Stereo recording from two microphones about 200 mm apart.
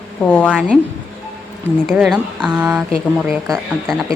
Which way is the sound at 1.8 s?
5° right (ahead or behind).